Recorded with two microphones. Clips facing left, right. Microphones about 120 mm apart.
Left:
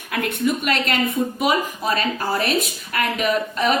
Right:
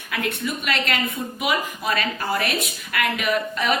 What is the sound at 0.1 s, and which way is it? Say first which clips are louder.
A woman's voice: left 5 dB; 50° left (ahead or behind).